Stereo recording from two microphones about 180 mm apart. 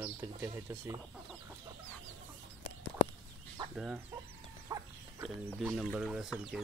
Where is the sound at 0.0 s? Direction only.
15° right (ahead or behind).